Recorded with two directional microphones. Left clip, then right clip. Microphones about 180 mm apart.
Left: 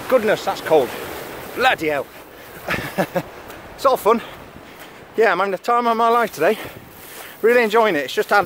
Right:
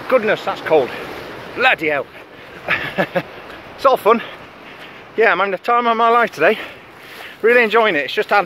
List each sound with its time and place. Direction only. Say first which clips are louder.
0.1 s speech: right 1 dB; 20° left (ahead or behind)
2.6 s a sound: right 4 dB; 20° left (ahead or behind)
3.8 s speech: right 3 dB; 10° left (ahead or behind)
5.1 s speech: right 2 dB; 25° left (ahead or behind); by 6.6 s 10° left (ahead or behind)
7.4 s speech: right 2 dB; 25° left (ahead or behind)